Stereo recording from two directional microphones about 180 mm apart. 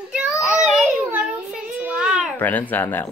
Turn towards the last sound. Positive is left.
turn(degrees=10)  # may be behind; listen again after turning